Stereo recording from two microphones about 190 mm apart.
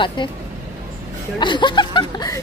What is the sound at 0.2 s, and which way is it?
Speech, 25° left (ahead or behind).